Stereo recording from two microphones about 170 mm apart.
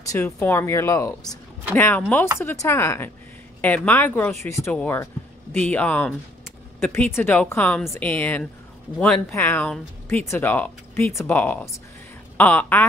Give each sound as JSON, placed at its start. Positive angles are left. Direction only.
{"t": 0.1, "sound": "speech", "side_deg": 15}